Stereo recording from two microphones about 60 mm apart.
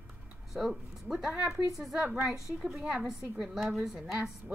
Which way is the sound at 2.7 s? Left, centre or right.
Centre.